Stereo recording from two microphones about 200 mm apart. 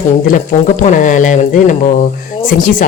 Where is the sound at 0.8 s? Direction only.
40° left (ahead or behind).